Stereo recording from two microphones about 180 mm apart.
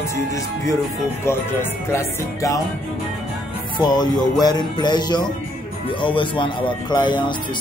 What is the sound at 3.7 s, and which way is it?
Music, 25° left (ahead or behind).